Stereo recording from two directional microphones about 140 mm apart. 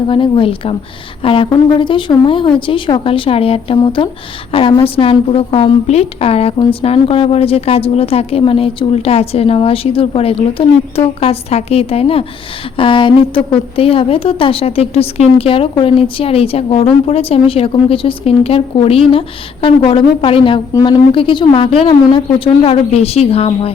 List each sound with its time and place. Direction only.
0.1 s a woman's voice: 35° left (ahead or behind)